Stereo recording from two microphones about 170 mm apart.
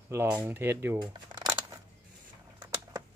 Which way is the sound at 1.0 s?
25° right (ahead or behind).